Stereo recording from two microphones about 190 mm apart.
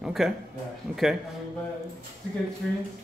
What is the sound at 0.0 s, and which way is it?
Speech, centre (ahead or behind).